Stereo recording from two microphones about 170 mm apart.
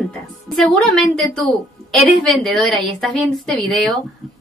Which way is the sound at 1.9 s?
Centre (ahead or behind).